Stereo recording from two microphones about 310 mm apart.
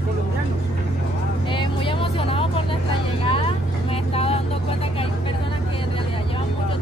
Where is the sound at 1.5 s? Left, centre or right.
Centre.